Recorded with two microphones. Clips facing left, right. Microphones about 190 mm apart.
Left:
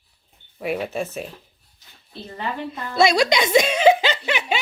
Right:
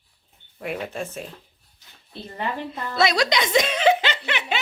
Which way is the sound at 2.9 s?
10° left (ahead or behind).